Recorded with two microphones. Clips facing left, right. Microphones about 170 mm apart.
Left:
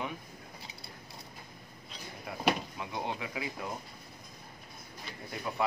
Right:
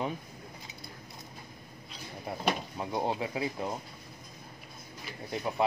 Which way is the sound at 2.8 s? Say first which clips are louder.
Right 5 dB; 35° right (ahead or behind).